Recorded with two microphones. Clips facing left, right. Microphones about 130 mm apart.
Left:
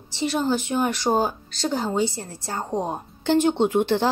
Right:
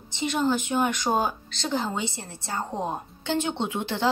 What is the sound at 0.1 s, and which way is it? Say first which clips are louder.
Speech: left 2 dB; 35° left (ahead or behind).